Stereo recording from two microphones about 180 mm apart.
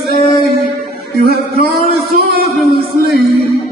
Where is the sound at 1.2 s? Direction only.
55° right (ahead or behind).